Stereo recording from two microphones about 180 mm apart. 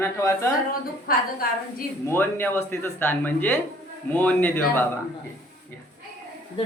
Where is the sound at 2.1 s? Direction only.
10° left (ahead or behind).